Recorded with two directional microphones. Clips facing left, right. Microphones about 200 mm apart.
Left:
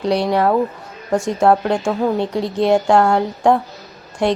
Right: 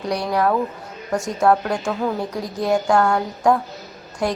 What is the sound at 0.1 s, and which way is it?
Speech, 25° left (ahead or behind).